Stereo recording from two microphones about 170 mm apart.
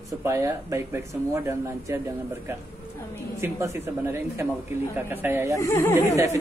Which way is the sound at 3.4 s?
15° right (ahead or behind).